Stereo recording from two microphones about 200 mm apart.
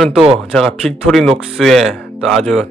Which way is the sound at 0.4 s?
Centre (ahead or behind).